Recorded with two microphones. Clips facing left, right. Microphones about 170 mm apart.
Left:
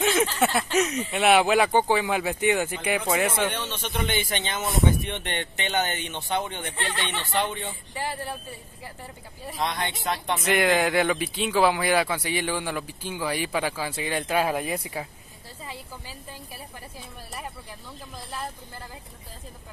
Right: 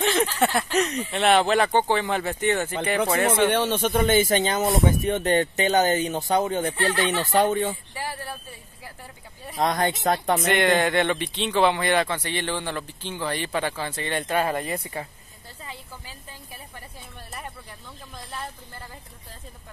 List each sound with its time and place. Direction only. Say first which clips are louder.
0.0 s speech: even; 5° left (ahead or behind)
3.4 s speech: right 9 dB; 50° right (ahead or behind)
6.9 s a woman's voice: right 6 dB; centre (ahead or behind)
7.2 s speech: right 6 dB; 45° right (ahead or behind)
9.6 s speech: right 6 dB; 45° right (ahead or behind)
10.4 s a woman's voice: left 2 dB; centre (ahead or behind)
18.1 s a woman's voice: left 1 dB; 5° left (ahead or behind)